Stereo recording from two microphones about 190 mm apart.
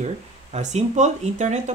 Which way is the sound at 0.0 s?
35° right (ahead or behind).